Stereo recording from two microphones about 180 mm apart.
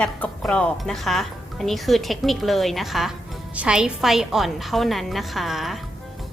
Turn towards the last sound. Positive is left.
turn(degrees=0)  # may be behind; listen again after turning